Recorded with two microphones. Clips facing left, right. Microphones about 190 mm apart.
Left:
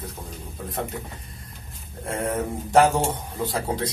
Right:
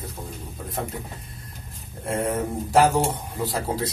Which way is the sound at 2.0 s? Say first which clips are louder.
Right 1 dB; centre (ahead or behind).